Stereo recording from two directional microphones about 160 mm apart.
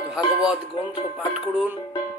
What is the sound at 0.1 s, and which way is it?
Speech, 5° right (ahead or behind).